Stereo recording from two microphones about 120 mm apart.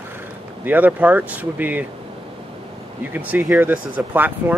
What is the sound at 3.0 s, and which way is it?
Speech, 15° right (ahead or behind).